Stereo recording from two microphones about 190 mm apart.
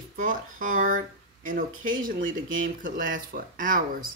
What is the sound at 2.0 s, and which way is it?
Speech, 45° right (ahead or behind).